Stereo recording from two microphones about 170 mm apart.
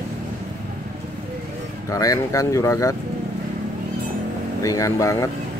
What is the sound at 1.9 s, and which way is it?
Speech, 20° left (ahead or behind).